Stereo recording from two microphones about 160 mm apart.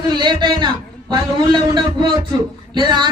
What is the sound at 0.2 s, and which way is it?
A man's voice, 30° right (ahead or behind).